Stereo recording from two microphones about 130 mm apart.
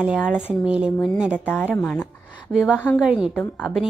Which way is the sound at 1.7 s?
10° left (ahead or behind).